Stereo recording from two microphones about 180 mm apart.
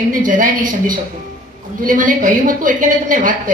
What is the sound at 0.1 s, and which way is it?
A woman's voice, 45° right (ahead or behind).